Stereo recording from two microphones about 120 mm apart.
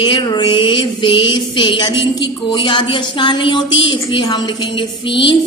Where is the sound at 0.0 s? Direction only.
40° left (ahead or behind).